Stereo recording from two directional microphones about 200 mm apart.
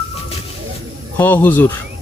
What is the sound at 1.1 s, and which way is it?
Speech, 10° left (ahead or behind).